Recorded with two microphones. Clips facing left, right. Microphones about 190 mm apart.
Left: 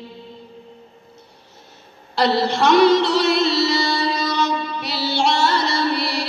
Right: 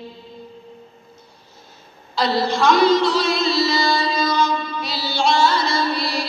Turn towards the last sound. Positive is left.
turn(degrees=70)  # may be behind; listen again after turning